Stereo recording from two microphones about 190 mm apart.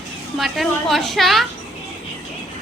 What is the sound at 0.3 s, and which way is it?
A woman's voice, centre (ahead or behind).